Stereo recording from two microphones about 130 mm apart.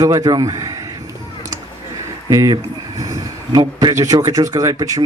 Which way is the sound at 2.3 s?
25° right (ahead or behind).